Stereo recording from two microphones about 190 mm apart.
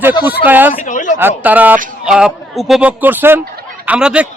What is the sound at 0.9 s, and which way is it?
Speech, 40° left (ahead or behind).